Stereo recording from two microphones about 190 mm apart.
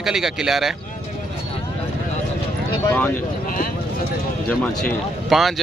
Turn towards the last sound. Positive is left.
turn(degrees=0)  # may be behind; listen again after turning